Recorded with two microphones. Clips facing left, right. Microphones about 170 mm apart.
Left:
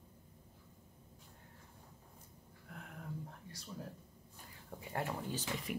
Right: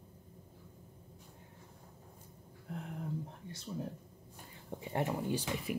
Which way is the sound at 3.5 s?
25° right (ahead or behind).